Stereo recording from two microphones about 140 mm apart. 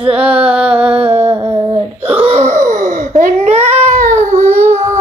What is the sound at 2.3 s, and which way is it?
Wail, 65° right (ahead or behind).